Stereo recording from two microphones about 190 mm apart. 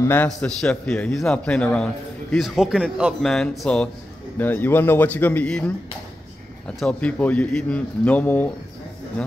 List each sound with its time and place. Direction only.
0.0 s a man's voice: 10° left (ahead or behind)
6.8 s a man's voice: 5° left (ahead or behind)